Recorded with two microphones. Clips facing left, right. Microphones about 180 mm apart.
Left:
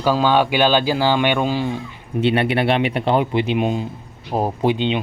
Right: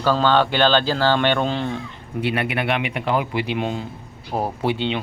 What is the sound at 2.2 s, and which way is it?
Speech, 30° left (ahead or behind).